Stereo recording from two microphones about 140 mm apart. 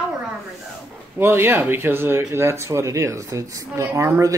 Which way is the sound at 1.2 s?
15° right (ahead or behind).